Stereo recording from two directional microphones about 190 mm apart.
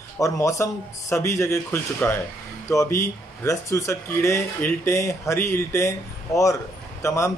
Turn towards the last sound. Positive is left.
turn(degrees=15)  # may be behind; listen again after turning